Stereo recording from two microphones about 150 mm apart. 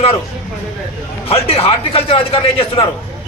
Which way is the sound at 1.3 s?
40° left (ahead or behind).